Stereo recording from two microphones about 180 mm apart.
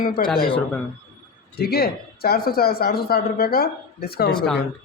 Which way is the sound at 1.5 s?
60° left (ahead or behind).